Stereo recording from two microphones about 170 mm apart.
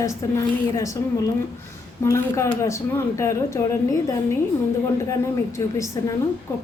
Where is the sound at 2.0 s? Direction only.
15° left (ahead or behind).